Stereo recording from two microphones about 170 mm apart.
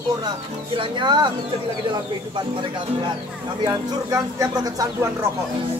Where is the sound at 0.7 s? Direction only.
25° right (ahead or behind).